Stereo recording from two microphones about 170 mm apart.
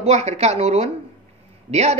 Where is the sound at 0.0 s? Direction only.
40° right (ahead or behind).